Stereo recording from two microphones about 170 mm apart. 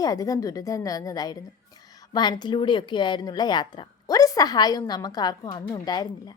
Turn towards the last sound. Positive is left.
turn(degrees=25)  # may be behind; listen again after turning